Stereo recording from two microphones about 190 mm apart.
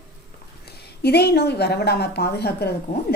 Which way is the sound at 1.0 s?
60° left (ahead or behind).